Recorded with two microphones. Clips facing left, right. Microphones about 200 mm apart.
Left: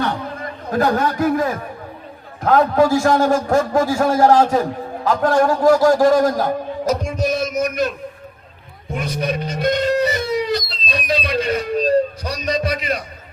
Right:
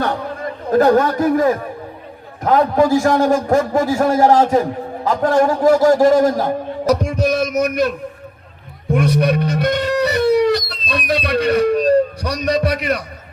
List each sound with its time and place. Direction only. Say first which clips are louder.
0.7 s a man's voice: right 5 dB; 40° right (ahead or behind)
2.4 s a man's voice: even; 15° right (ahead or behind)
6.8 s music: right 4 dB; 65° right (ahead or behind)
8.9 s guitar: right 7 dB; 60° right (ahead or behind)
11.1 s a man's voice: right 4 dB; 65° right (ahead or behind)